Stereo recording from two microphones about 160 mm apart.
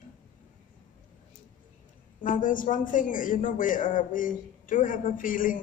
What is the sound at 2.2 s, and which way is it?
A woman's voice, 55° left (ahead or behind).